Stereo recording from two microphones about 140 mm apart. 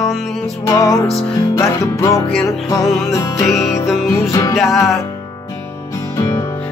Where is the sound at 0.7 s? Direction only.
25° left (ahead or behind).